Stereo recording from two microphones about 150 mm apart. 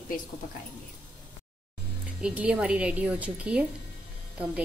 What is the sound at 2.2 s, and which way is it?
A woman's voice, 10° right (ahead or behind).